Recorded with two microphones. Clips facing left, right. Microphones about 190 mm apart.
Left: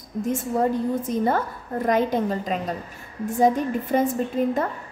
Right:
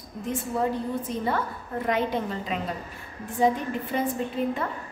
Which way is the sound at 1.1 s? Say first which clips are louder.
Left 5 dB; 45° left (ahead or behind).